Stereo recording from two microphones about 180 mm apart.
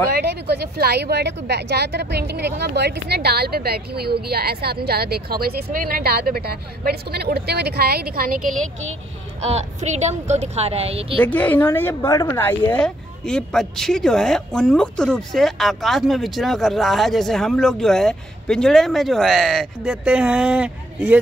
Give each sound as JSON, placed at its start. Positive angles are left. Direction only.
{"t": 0.1, "sound": "a woman's voice", "side_deg": -65}
{"t": 9.4, "sound": "a woman's voice", "side_deg": -35}
{"t": 11.2, "sound": "a woman's voice", "side_deg": 10}